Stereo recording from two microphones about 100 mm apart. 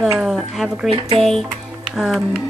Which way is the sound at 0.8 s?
65° right (ahead or behind).